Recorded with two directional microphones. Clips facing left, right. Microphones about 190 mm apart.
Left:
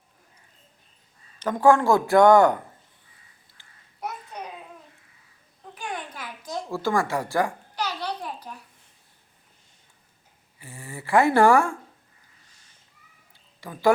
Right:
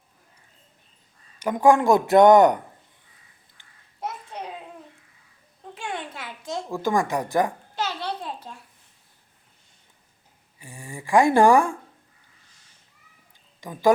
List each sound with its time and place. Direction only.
1.4 s a woman's voice: 15° right (ahead or behind)
3.6 s babbling: 25° right (ahead or behind)
5.7 s a sound: 25° right (ahead or behind)
10.6 s speech: 15° right (ahead or behind)
13.6 s a woman's voice: 15° right (ahead or behind)